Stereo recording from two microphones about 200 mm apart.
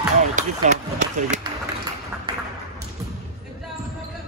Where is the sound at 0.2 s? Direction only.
40° right (ahead or behind).